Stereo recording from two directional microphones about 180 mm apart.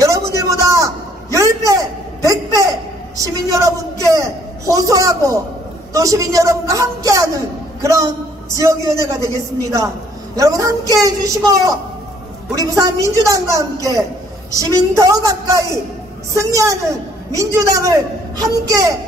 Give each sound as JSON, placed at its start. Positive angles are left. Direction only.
{"t": 0.5, "sound": "a sound", "side_deg": -20}
{"t": 5.9, "sound": "a man's voice", "side_deg": -20}
{"t": 14.6, "sound": "a woman's voice", "side_deg": -20}